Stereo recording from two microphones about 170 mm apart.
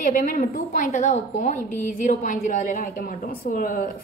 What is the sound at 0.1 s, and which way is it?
Speech, 55° left (ahead or behind).